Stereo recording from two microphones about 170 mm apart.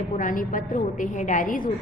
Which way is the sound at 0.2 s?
50° left (ahead or behind).